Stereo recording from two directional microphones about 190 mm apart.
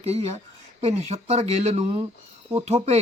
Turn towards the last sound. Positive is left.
turn(degrees=-35)  # may be behind; listen again after turning